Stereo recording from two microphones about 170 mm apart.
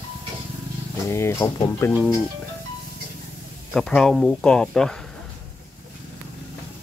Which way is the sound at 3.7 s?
5° left (ahead or behind).